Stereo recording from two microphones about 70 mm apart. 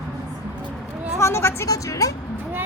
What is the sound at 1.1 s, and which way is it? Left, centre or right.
Speech, left.